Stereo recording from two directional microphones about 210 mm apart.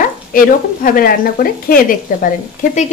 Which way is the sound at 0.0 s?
40° left (ahead or behind).